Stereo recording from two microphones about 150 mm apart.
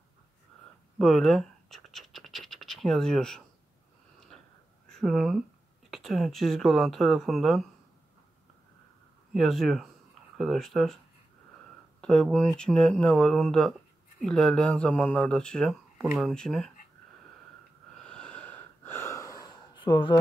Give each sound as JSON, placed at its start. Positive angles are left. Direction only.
{"t": 0.9, "sound": "scratch", "side_deg": 0}
{"t": 4.8, "sound": "speech", "side_deg": 0}
{"t": 9.3, "sound": "speech", "side_deg": 0}
{"t": 12.0, "sound": "speech", "side_deg": 5}
{"t": 17.9, "sound": "breathing", "side_deg": 5}